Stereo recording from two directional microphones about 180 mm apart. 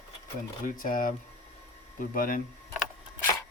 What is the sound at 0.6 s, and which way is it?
Speech, 50° left (ahead or behind).